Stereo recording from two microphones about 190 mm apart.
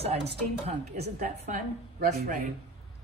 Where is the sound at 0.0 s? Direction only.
30° right (ahead or behind).